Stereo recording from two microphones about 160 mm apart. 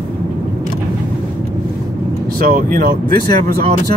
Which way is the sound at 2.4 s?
55° right (ahead or behind).